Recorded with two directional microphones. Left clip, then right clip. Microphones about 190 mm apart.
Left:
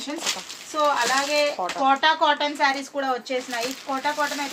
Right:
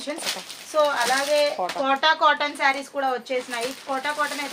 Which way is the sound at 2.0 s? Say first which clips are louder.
Right 1 dB; 35° right (ahead or behind).